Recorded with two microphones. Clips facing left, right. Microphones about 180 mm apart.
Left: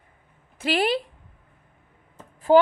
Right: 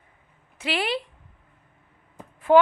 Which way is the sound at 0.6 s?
45° left (ahead or behind).